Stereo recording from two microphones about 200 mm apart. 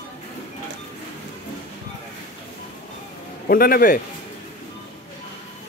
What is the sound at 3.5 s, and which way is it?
Speech, 50° left (ahead or behind).